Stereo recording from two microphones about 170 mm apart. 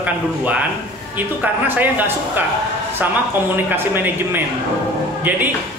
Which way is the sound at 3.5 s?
10° right (ahead or behind).